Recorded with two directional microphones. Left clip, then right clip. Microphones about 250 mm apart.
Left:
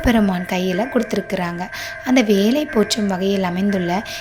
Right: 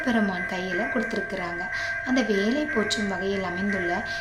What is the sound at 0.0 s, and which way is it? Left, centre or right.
Speech, left.